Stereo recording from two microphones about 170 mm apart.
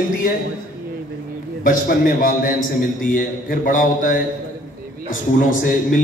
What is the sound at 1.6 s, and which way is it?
A man's voice, 55° left (ahead or behind).